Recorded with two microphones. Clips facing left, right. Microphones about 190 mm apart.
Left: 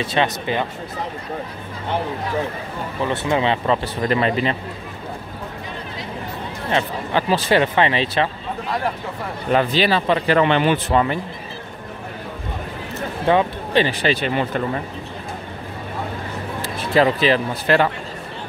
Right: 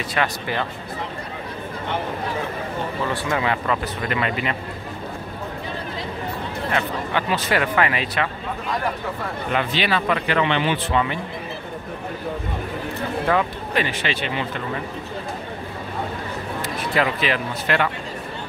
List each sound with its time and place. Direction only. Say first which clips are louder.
0.0 s speech: left 4 dB; 25° left (ahead or behind)
3.1 s speech: left 5 dB; 25° left (ahead or behind)
6.7 s speech: left 4 dB; 30° left (ahead or behind)
9.5 s speech: left 6 dB; 40° left (ahead or behind)
13.3 s speech: left 6 dB; 25° left (ahead or behind); by 14.6 s 45° left (ahead or behind)
16.6 s speech: left 6 dB; 30° left (ahead or behind)